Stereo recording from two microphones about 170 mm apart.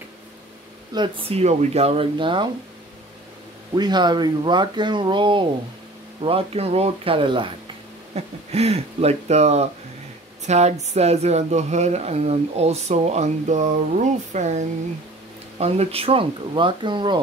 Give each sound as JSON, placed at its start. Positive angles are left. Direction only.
{"t": 0.9, "sound": "speech", "side_deg": -30}
{"t": 3.7, "sound": "speech", "side_deg": -25}